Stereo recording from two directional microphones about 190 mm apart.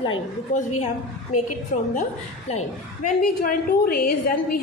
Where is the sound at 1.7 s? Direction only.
40° left (ahead or behind).